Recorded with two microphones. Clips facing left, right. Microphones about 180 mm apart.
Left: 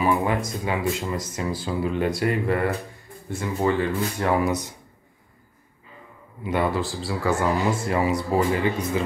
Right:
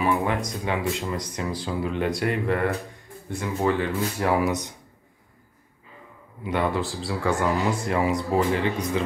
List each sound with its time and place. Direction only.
0.0 s a sound: centre (ahead or behind)
0.5 s speech: 5° left (ahead or behind)
6.4 s speech: 5° left (ahead or behind)